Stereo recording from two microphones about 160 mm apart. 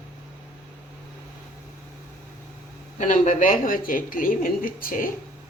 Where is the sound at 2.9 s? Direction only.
50° left (ahead or behind).